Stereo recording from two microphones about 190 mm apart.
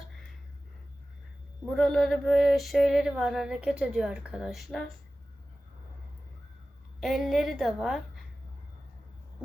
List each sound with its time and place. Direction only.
1.6 s female singing: centre (ahead or behind)
7.0 s female singing: centre (ahead or behind)